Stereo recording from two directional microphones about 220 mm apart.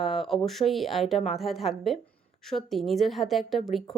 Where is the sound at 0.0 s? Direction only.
Centre (ahead or behind).